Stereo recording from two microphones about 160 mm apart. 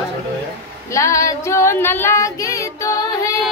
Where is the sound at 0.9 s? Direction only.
20° left (ahead or behind).